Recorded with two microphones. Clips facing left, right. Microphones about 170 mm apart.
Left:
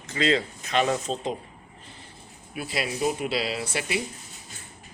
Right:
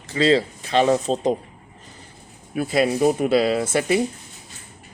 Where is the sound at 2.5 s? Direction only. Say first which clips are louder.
Right 10 dB; 50° right (ahead or behind).